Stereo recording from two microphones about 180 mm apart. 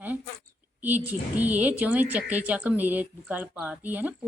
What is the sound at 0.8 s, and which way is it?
Speech, 10° right (ahead or behind).